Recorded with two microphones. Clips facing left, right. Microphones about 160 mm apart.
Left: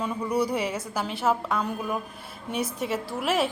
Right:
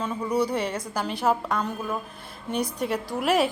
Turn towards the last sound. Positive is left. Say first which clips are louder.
# right 3 dB
turn(degrees=0)  # may be behind; listen again after turning